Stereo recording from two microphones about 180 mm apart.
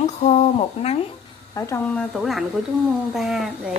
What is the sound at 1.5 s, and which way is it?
A woman's voice, 15° left (ahead or behind).